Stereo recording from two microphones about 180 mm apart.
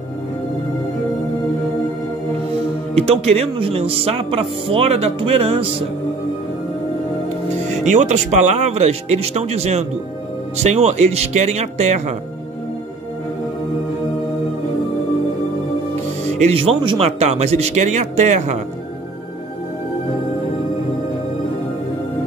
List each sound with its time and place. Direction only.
2.9 s speech: 35° right (ahead or behind)
7.5 s speech: 40° right (ahead or behind)
16.3 s speech: 35° right (ahead or behind)